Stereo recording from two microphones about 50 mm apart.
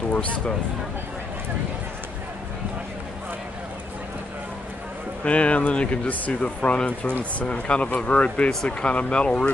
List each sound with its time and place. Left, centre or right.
0.1 s speech: left
5.2 s speech: left